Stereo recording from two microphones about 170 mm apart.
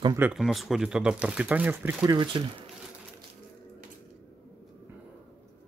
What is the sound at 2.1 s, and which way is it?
Speech, 25° right (ahead or behind).